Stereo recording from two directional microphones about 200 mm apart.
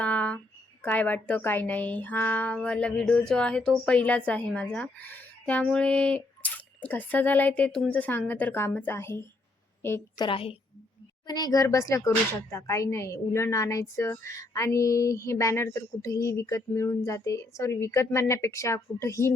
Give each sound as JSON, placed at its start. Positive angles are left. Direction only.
{"t": 0.0, "sound": "a woman's voice", "side_deg": 5}
{"t": 10.2, "sound": "a woman's voice", "side_deg": 25}